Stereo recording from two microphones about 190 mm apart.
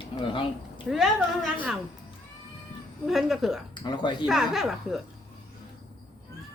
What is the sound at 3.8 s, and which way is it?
Speech, 25° left (ahead or behind).